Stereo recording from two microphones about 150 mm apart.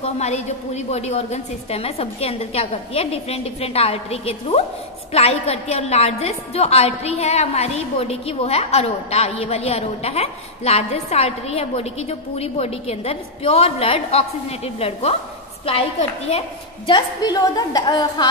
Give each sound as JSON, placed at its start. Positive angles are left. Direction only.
{"t": 0.0, "sound": "a woman's voice", "side_deg": 50}